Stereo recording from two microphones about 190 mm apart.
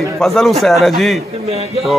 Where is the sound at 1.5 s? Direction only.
35° right (ahead or behind).